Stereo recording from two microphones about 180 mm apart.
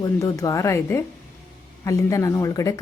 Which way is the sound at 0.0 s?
20° left (ahead or behind).